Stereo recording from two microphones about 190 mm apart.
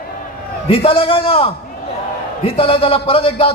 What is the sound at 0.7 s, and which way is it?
A man's voice, 30° left (ahead or behind).